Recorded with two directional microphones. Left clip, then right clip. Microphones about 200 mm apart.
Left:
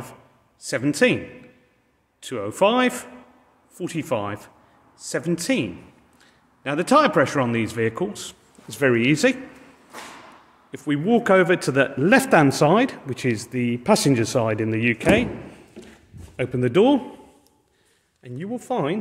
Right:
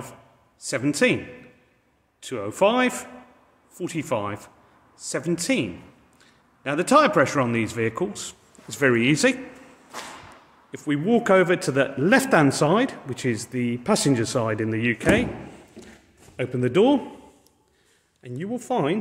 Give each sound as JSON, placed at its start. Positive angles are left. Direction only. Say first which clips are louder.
{"t": 0.6, "sound": "a man's voice", "louder": "left 2 dB", "side_deg": 10}
{"t": 10.7, "sound": "a man's voice", "louder": "left 1 dB", "side_deg": 15}
{"t": 18.2, "sound": "speech", "louder": "even", "side_deg": -5}